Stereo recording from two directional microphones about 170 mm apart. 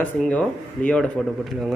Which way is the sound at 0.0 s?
5° left (ahead or behind).